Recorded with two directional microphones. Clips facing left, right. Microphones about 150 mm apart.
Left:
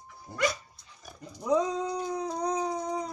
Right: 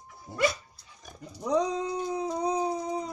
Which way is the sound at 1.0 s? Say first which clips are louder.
Right 1 dB; 5° left (ahead or behind).